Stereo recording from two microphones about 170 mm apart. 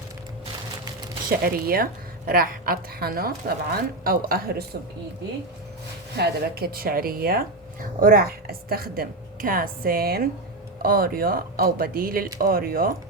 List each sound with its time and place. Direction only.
1.4 s speech: 60° right (ahead or behind)
6.1 s speech: 70° right (ahead or behind)